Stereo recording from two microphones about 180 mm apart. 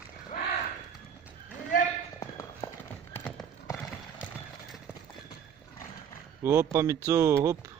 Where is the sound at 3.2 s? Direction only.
Centre (ahead or behind).